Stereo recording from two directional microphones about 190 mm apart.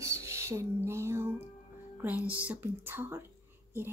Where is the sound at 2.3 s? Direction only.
10° right (ahead or behind).